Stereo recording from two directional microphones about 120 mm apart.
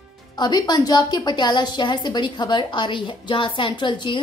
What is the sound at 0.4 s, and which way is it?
A woman's voice, 35° left (ahead or behind).